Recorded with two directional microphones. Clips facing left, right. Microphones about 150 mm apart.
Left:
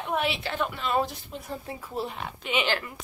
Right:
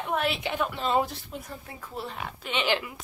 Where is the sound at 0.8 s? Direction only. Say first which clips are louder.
Right 2 dB; 40° right (ahead or behind).